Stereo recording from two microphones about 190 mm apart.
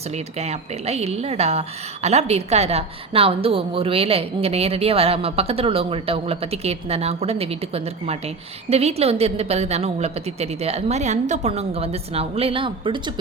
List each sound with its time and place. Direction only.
0.1 s a woman's voice: 35° right (ahead or behind)